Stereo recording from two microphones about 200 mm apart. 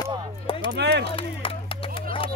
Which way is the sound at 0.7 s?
55° right (ahead or behind).